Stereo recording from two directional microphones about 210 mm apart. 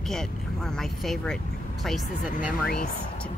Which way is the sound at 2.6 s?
45° left (ahead or behind).